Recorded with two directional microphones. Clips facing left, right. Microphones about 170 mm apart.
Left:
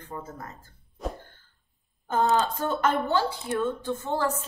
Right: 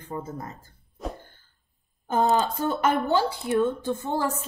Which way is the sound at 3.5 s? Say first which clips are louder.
Right 4 dB; 10° right (ahead or behind).